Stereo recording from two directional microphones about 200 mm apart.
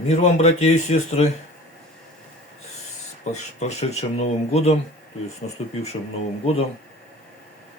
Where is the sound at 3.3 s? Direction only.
35° left (ahead or behind).